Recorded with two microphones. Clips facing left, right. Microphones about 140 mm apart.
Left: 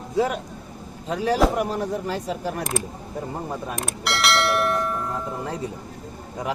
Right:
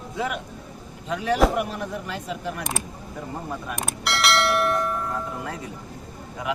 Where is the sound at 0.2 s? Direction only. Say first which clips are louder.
Left 6 dB; 35° left (ahead or behind).